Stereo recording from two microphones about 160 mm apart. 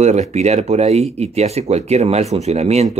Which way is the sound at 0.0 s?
45° right (ahead or behind).